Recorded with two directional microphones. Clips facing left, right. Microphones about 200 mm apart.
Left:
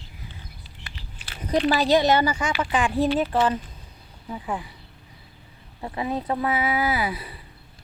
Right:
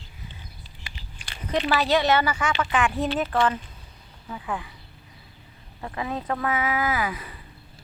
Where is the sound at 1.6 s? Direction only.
35° left (ahead or behind).